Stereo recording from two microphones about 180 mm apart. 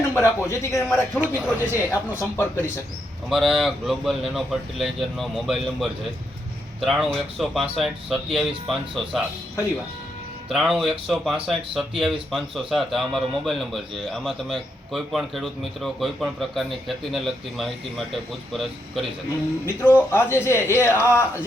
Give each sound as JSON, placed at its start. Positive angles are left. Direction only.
{"t": 0.1, "sound": "a man's voice", "side_deg": 15}
{"t": 1.2, "sound": "speech", "side_deg": -10}
{"t": 1.7, "sound": "a man's voice", "side_deg": 15}
{"t": 3.2, "sound": "a man's voice", "side_deg": 0}
{"t": 10.5, "sound": "a man's voice", "side_deg": 0}